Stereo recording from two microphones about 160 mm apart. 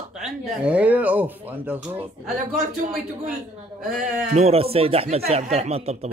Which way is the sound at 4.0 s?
40° right (ahead or behind).